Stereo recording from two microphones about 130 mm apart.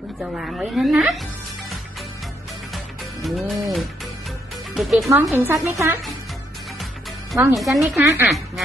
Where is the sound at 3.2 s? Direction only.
Centre (ahead or behind).